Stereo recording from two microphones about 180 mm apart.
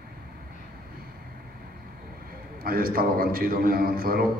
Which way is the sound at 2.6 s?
55° right (ahead or behind).